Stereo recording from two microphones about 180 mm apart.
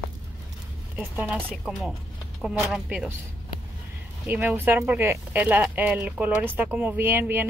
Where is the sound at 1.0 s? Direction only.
10° right (ahead or behind).